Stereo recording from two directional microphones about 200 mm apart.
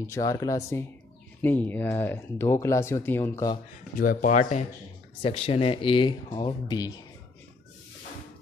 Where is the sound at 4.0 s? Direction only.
45° left (ahead or behind); by 6.9 s 20° left (ahead or behind).